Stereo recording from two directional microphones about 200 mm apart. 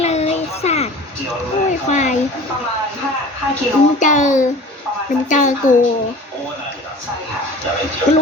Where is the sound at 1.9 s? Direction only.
35° left (ahead or behind).